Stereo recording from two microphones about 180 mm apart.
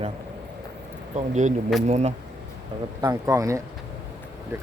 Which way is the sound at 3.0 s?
20° right (ahead or behind).